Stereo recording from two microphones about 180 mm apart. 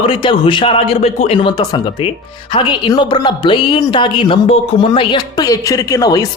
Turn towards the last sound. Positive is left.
turn(degrees=20)  # may be behind; listen again after turning